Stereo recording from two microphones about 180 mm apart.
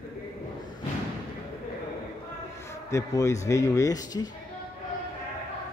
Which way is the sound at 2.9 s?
15° left (ahead or behind).